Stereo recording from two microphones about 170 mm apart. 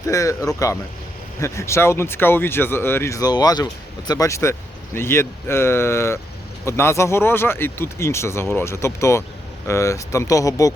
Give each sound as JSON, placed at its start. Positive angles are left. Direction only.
{"t": 0.1, "sound": "speech", "side_deg": 20}